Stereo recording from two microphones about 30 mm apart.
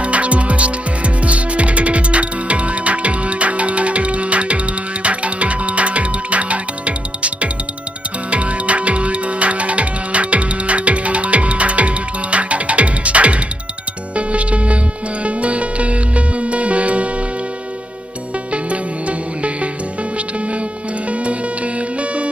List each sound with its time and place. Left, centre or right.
0.0 s music: right
18.5 s music: right
21.1 s music: right